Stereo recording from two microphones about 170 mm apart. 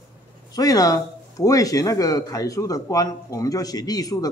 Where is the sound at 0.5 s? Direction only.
20° left (ahead or behind).